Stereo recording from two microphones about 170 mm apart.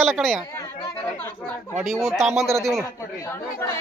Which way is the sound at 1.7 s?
Centre (ahead or behind).